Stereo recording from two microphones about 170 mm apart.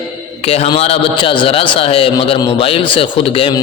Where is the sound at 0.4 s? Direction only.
35° left (ahead or behind).